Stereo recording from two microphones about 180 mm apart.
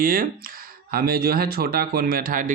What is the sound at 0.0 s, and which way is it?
Speech, 50° right (ahead or behind).